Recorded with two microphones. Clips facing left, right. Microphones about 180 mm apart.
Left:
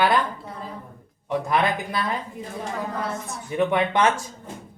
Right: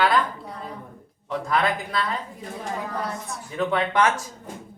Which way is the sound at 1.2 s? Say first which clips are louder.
Left 1 dB; 15° left (ahead or behind).